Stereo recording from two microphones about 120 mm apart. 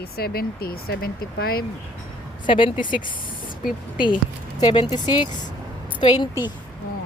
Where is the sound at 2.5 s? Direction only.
45° left (ahead or behind).